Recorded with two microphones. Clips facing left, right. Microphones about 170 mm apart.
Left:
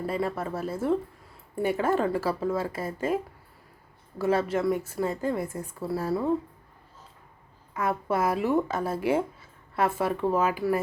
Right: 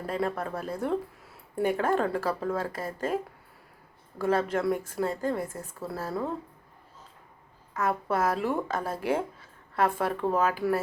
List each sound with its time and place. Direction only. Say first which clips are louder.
0.0 s a woman's voice: left 1 dB; 5° left (ahead or behind)
4.2 s a woman's voice: left 1 dB; 10° left (ahead or behind)
7.7 s a woman's voice: left 1 dB; 10° left (ahead or behind)